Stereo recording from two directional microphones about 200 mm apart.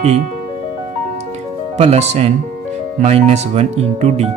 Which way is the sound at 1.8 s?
35° right (ahead or behind).